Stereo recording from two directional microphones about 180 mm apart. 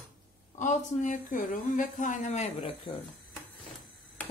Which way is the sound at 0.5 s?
45° left (ahead or behind).